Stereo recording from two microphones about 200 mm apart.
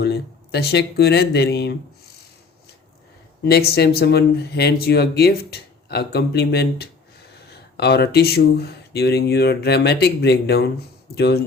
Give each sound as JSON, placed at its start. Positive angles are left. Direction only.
{"t": 0.0, "sound": "speech", "side_deg": 55}
{"t": 3.4, "sound": "speech", "side_deg": 55}